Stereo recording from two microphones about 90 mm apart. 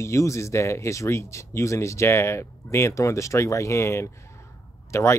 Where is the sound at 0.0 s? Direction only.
35° left (ahead or behind).